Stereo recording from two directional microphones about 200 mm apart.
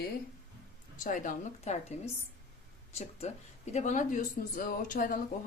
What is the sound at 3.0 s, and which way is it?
A woman's voice, 30° left (ahead or behind).